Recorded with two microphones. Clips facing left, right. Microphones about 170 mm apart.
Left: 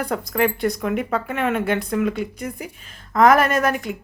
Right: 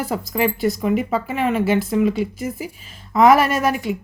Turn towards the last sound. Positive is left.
turn(degrees=-5)  # may be behind; listen again after turning